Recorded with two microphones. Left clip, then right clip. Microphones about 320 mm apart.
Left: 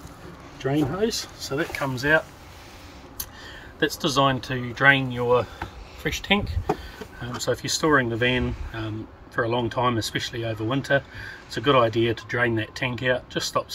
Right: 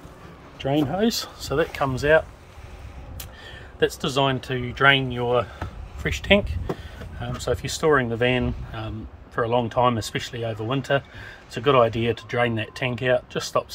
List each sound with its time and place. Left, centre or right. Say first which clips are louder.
0.7 s speech: right 2 dB; right
3.8 s speech: even; centre
7.4 s speech: right 1 dB; centre